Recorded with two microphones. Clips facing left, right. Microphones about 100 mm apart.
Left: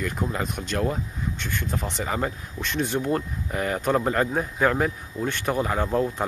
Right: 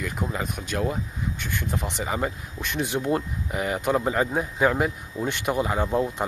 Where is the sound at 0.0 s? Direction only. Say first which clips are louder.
Left 1 dB; 5° right (ahead or behind).